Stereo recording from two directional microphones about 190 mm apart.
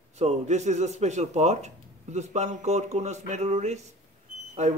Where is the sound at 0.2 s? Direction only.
35° right (ahead or behind).